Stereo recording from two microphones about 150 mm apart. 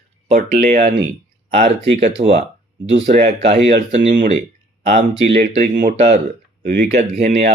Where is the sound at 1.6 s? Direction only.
40° right (ahead or behind).